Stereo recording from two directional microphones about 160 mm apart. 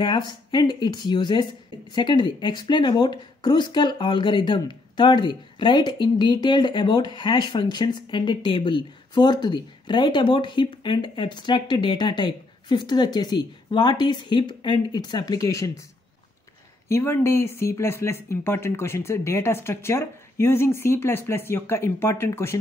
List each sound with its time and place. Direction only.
0.0 s speech: 25° left (ahead or behind)
16.9 s speech: 15° left (ahead or behind)